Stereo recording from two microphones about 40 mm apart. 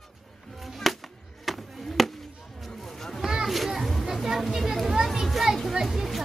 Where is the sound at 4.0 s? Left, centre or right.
Centre.